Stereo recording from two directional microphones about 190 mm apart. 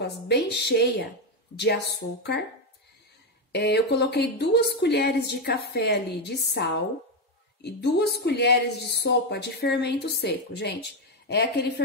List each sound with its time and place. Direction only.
0.0 s speech: 65° left (ahead or behind)
3.5 s speech: 60° left (ahead or behind)